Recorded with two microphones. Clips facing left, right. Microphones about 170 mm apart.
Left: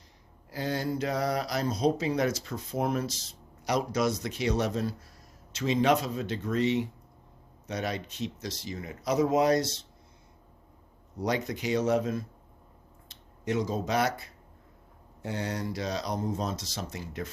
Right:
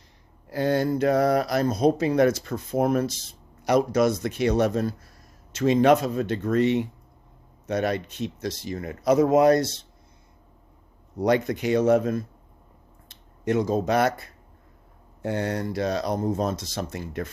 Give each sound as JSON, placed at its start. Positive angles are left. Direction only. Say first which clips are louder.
{"t": 0.5, "sound": "speech", "louder": "right 8 dB", "side_deg": -60}
{"t": 11.2, "sound": "speech", "louder": "right 8 dB", "side_deg": -55}